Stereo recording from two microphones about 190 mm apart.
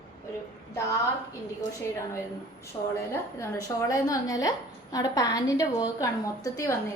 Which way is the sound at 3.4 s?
15° left (ahead or behind).